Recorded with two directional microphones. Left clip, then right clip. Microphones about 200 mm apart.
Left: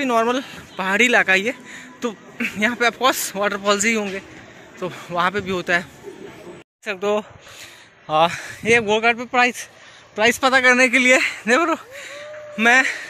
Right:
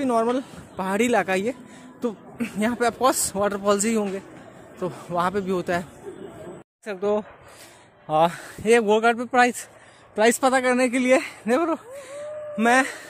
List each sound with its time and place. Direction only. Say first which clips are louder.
0.0 s speech: left 3 dB; 5° right (ahead or behind)
8.6 s speech: left 1 dB; 25° right (ahead or behind)
10.4 s speech: left 6 dB; 5° right (ahead or behind)